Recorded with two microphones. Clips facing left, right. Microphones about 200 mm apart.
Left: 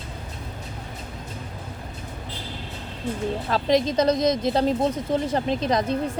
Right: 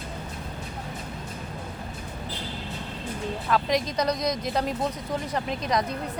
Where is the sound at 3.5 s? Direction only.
30° left (ahead or behind).